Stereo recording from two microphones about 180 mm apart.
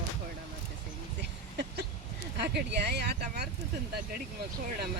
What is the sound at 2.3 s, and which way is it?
Speech, 70° right (ahead or behind).